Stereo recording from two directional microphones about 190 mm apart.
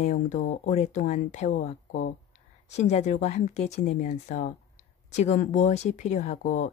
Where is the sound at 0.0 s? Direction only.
40° left (ahead or behind).